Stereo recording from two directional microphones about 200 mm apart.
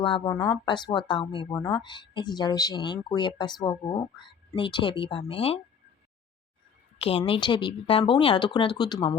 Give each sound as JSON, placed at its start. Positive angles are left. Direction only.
{"t": 0.3, "sound": "speech", "side_deg": 25}
{"t": 7.0, "sound": "speech", "side_deg": 25}